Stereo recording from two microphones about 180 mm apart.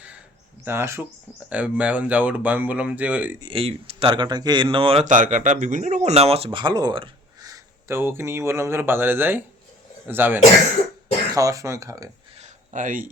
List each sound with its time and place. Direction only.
0.6 s speech: 15° right (ahead or behind)
3.4 s speech: 30° right (ahead or behind)
5.0 s speech: 45° right (ahead or behind); by 12.0 s 20° right (ahead or behind)
12.4 s a sound: 45° right (ahead or behind)